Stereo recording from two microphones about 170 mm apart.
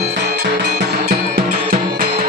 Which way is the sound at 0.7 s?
50° right (ahead or behind).